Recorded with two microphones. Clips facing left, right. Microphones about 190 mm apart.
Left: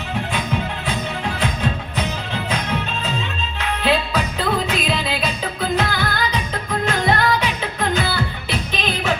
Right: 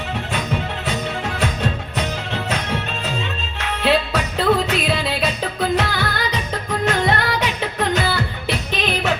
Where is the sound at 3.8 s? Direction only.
70° right (ahead or behind).